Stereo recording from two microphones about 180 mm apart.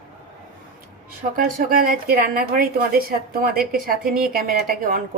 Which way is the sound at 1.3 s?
50° right (ahead or behind).